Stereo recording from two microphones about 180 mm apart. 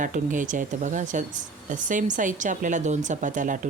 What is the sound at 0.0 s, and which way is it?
Speech, 45° right (ahead or behind).